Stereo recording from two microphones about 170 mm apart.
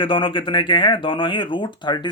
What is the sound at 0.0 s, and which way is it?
Speech, 30° left (ahead or behind).